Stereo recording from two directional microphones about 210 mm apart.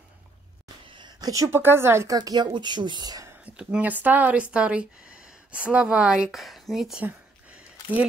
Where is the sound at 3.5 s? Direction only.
5° right (ahead or behind).